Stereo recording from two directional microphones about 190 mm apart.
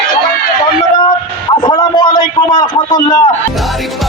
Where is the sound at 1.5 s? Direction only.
25° left (ahead or behind).